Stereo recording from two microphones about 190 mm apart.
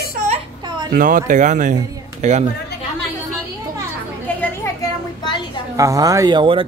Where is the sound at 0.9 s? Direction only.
45° right (ahead or behind).